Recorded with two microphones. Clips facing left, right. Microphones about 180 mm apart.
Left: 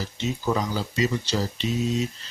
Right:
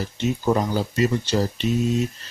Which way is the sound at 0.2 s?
50° right (ahead or behind).